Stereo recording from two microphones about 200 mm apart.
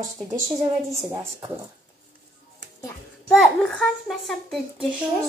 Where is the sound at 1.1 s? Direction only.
20° right (ahead or behind).